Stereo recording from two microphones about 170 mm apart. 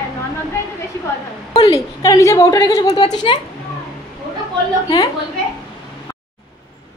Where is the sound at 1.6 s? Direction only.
20° left (ahead or behind).